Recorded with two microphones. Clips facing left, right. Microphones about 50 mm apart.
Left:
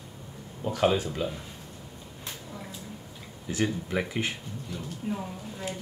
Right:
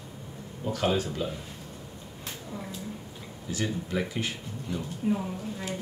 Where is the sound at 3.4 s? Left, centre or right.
Left.